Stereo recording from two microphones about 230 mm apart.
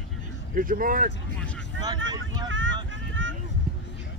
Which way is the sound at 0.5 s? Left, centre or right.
Right.